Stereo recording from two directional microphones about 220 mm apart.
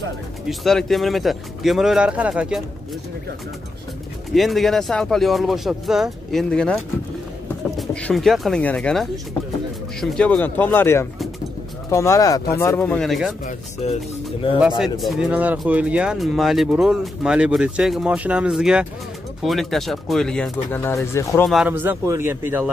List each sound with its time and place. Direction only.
0.5 s speech: centre (ahead or behind)
4.3 s speech: centre (ahead or behind)
13.8 s speech: 30° left (ahead or behind)
14.8 s speech: centre (ahead or behind)
21.5 s a man's voice: 5° right (ahead or behind)